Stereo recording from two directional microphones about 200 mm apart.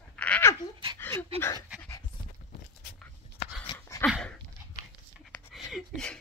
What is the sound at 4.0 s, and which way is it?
Dog, 5° left (ahead or behind).